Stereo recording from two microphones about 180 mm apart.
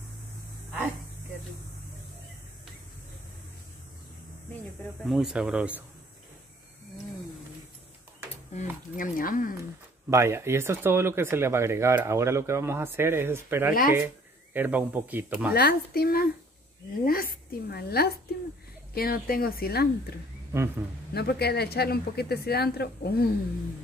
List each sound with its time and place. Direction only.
5.0 s speech: centre (ahead or behind)
8.5 s speech: 50° left (ahead or behind)
10.0 s speech: 15° right (ahead or behind)
15.5 s speech: 60° left (ahead or behind)
20.5 s speech: 15° right (ahead or behind)
21.1 s speech: 65° left (ahead or behind)